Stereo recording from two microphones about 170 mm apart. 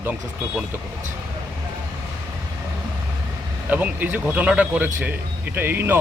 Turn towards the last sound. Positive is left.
turn(degrees=-15)  # may be behind; listen again after turning